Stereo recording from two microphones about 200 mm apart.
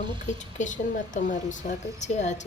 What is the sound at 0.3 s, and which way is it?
Speech, 40° left (ahead or behind).